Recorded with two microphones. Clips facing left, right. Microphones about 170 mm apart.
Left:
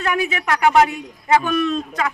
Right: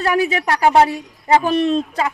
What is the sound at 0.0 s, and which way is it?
Speech, 35° right (ahead or behind).